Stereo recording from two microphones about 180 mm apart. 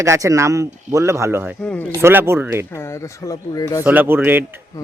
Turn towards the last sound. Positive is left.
turn(degrees=-10)  # may be behind; listen again after turning